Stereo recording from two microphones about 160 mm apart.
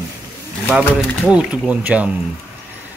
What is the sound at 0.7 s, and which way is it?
Speech, 5° right (ahead or behind).